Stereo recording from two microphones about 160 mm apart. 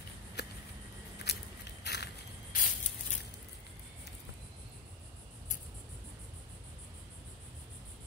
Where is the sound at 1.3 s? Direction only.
90° left.